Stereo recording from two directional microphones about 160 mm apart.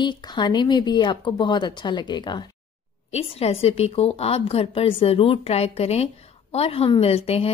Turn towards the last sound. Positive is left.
turn(degrees=40)  # may be behind; listen again after turning